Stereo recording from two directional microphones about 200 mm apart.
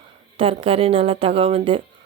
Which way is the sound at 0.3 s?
25° right (ahead or behind).